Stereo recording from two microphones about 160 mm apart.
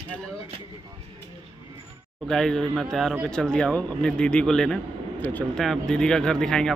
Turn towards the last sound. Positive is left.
turn(degrees=5)  # may be behind; listen again after turning